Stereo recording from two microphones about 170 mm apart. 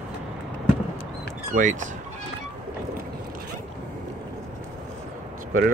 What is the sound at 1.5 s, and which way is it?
Speech, 50° right (ahead or behind).